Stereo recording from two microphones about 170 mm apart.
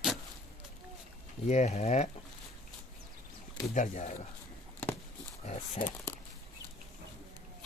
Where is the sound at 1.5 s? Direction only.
40° left (ahead or behind).